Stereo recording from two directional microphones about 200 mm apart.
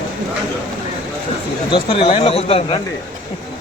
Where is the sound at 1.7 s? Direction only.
25° left (ahead or behind).